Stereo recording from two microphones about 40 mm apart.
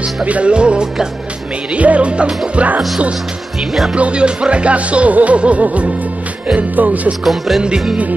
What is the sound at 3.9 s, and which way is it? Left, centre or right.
Music, right.